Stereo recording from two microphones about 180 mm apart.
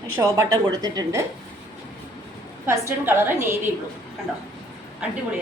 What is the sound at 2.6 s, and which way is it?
Speech, 15° right (ahead or behind).